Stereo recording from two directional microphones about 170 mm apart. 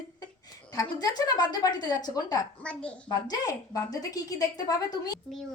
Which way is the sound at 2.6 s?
5° left (ahead or behind).